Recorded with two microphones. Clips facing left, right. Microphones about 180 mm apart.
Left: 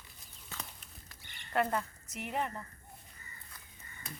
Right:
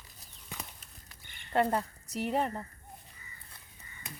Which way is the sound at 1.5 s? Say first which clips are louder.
Right 4 dB; 30° right (ahead or behind).